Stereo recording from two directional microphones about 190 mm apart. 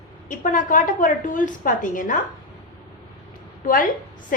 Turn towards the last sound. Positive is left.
turn(degrees=45)  # may be behind; listen again after turning